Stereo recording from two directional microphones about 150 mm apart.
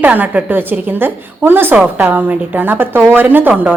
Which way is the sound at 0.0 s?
10° right (ahead or behind).